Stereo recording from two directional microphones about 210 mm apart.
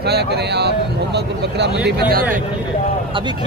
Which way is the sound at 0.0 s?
50° right (ahead or behind).